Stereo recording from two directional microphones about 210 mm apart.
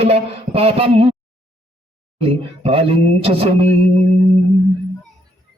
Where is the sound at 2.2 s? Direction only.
25° right (ahead or behind).